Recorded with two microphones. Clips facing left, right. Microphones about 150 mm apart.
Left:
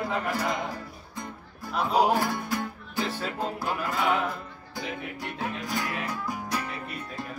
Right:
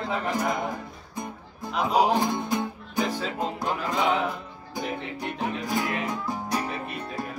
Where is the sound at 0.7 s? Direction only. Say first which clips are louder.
Right 3 dB; 20° right (ahead or behind).